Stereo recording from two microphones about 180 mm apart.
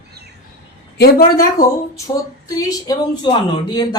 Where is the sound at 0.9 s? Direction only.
60° left (ahead or behind).